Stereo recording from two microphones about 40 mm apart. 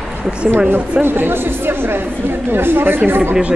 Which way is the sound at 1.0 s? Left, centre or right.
Right.